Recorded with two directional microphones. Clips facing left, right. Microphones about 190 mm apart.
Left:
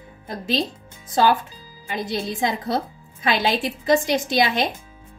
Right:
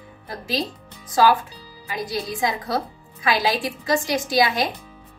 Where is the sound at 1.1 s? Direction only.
25° left (ahead or behind).